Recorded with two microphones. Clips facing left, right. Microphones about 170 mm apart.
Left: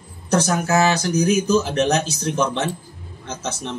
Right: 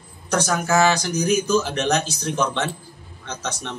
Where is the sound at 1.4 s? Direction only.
35° left (ahead or behind).